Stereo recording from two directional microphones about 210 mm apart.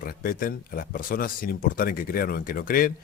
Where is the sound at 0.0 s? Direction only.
45° left (ahead or behind).